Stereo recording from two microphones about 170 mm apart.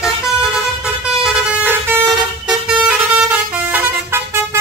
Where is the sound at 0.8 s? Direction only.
5° right (ahead or behind).